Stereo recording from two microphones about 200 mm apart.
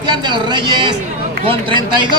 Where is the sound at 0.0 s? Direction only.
20° right (ahead or behind).